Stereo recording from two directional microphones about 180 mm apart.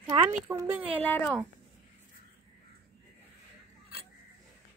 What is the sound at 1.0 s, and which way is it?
Speech, 10° left (ahead or behind).